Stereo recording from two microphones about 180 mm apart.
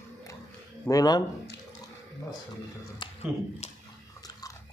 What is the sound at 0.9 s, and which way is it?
Speech, 20° left (ahead or behind).